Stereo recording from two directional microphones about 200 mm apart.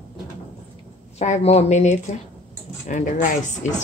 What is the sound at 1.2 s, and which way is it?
A woman's voice, 35° left (ahead or behind).